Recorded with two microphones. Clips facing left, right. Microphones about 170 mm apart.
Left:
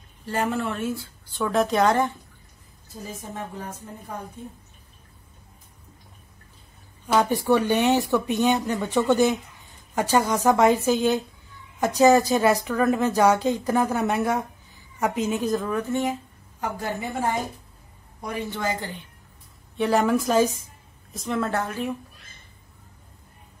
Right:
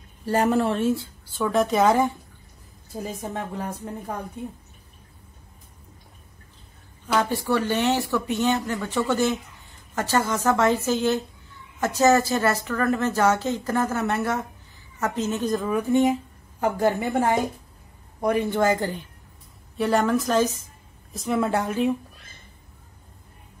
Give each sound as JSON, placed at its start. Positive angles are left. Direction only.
{"t": 0.2, "sound": "a woman's voice", "side_deg": -40}
{"t": 1.3, "sound": "speech", "side_deg": 0}
{"t": 3.2, "sound": "a woman's voice", "side_deg": -60}
{"t": 7.1, "sound": "a woman's voice", "side_deg": 15}
{"t": 15.5, "sound": "speech", "side_deg": 0}
{"t": 15.9, "sound": "speech", "side_deg": -20}
{"t": 16.6, "sound": "speech", "side_deg": -50}
{"t": 19.8, "sound": "a woman's voice", "side_deg": 0}
{"t": 21.4, "sound": "speech", "side_deg": -15}